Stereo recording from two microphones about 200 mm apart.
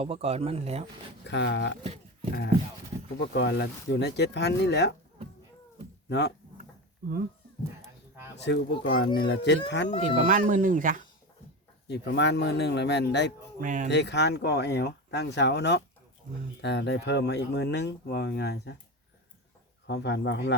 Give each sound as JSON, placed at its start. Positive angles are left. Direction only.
{"t": 0.0, "sound": "speech", "side_deg": -30}
{"t": 1.2, "sound": "speech", "side_deg": 60}
{"t": 3.2, "sound": "speech", "side_deg": 60}
{"t": 6.1, "sound": "speech", "side_deg": 60}
{"t": 8.4, "sound": "speech", "side_deg": 60}
{"t": 10.2, "sound": "speech", "side_deg": -40}
{"t": 11.9, "sound": "speech", "side_deg": 60}
{"t": 13.6, "sound": "speech", "side_deg": -40}
{"t": 13.8, "sound": "speech", "side_deg": 60}
{"t": 19.9, "sound": "speech", "side_deg": 60}